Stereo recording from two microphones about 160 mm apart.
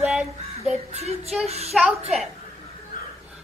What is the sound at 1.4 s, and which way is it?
Speech, 40° right (ahead or behind).